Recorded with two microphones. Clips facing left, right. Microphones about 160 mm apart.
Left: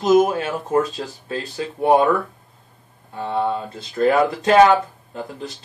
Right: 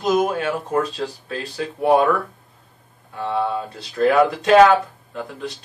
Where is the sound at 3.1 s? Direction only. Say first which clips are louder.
Even; 20° left (ahead or behind).